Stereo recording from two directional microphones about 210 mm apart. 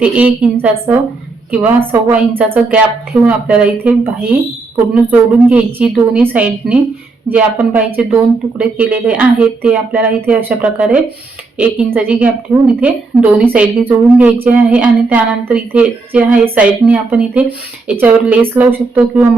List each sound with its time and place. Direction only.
0.0 s a woman's voice: 5° right (ahead or behind)